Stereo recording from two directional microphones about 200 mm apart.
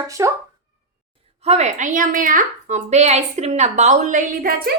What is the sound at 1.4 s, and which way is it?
A woman's voice, 35° right (ahead or behind).